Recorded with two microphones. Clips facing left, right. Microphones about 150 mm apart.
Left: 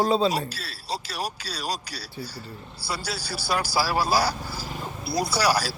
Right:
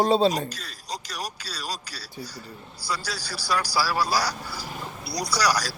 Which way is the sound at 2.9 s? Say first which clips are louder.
Left 3 dB; 30° left (ahead or behind).